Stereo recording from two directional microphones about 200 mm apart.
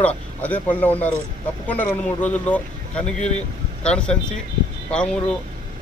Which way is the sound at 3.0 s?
35° left (ahead or behind).